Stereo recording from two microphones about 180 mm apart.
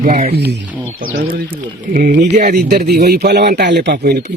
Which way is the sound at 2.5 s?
65° right (ahead or behind).